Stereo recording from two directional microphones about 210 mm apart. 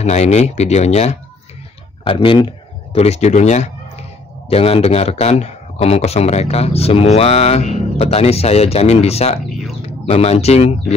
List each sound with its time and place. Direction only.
0.0 s speech: 30° left (ahead or behind)
9.5 s a sound: centre (ahead or behind)
9.8 s speech: 30° left (ahead or behind)